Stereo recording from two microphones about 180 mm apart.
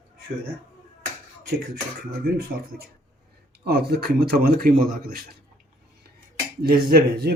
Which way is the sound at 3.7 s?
60° right (ahead or behind).